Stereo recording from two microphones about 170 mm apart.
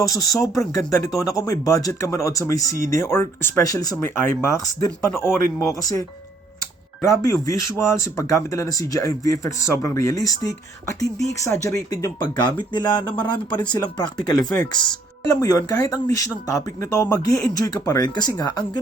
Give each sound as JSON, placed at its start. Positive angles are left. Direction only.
{"t": 0.0, "sound": "speech", "side_deg": 20}
{"t": 2.7, "sound": "speech", "side_deg": -50}
{"t": 3.0, "sound": "speech", "side_deg": 15}